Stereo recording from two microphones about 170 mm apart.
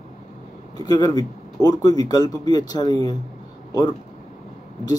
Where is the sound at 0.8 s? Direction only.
25° left (ahead or behind).